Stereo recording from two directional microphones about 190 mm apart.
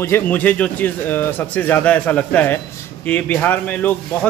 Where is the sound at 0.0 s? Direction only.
10° left (ahead or behind).